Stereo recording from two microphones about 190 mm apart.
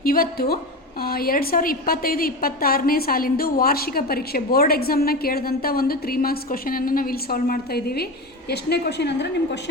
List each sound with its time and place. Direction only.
0.0 s a woman's voice: 50° left (ahead or behind)